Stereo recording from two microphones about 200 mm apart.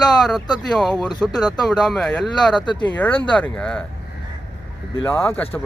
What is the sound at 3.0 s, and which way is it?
Speech, 10° left (ahead or behind).